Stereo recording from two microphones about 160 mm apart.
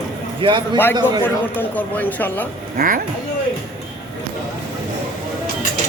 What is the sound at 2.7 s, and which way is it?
Speech, 60° right (ahead or behind).